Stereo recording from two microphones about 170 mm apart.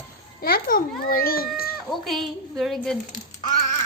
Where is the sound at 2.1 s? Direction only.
Centre (ahead or behind).